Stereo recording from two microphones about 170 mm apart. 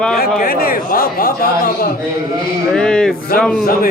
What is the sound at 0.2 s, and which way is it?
A man's voice, 60° left (ahead or behind).